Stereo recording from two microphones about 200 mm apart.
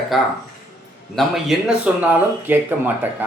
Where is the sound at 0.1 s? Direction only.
Centre (ahead or behind).